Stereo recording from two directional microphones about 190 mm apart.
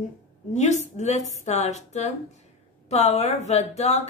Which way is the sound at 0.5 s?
40° left (ahead or behind).